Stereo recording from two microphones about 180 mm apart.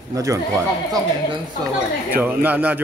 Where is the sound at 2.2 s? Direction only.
10° right (ahead or behind).